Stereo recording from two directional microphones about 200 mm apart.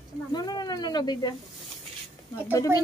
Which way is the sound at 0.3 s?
20° left (ahead or behind).